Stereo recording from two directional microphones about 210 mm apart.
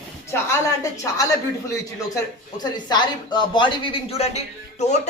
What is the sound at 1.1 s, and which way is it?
Speech, 15° left (ahead or behind).